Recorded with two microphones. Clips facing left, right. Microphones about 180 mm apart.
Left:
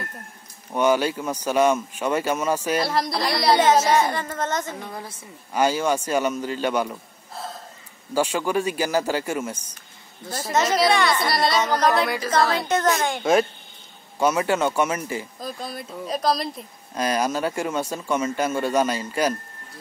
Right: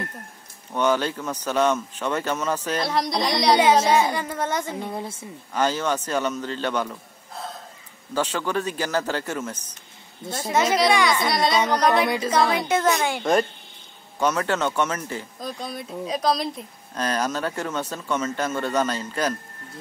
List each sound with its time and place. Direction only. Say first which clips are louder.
0.7 s speech: left 2 dB; 10° left (ahead or behind)
3.9 s a woman's voice: even; 15° right (ahead or behind)
4.7 s speech: right 4 dB; 25° right (ahead or behind)
5.5 s speech: left 2 dB; 10° left (ahead or behind)
10.5 s a woman's voice: even; 10° right (ahead or behind)
11.9 s a woman's voice: right 1 dB; 20° right (ahead or behind); by 13.3 s 5° right (ahead or behind)
14.2 s speech: left 2 dB; 10° left (ahead or behind)